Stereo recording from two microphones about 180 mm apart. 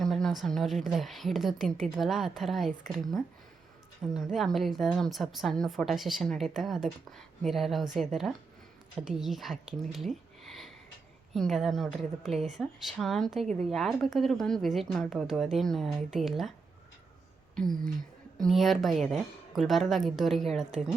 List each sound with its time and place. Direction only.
0.0 s a woman's voice: centre (ahead or behind)